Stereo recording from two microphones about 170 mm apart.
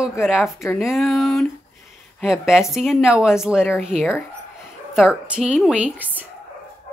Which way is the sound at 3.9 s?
40° right (ahead or behind).